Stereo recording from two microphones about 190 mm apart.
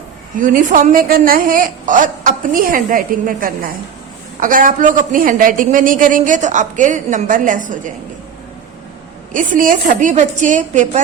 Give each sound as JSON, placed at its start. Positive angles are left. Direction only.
{"t": 0.3, "sound": "a woman's voice", "side_deg": -45}
{"t": 9.3, "sound": "a woman's voice", "side_deg": -45}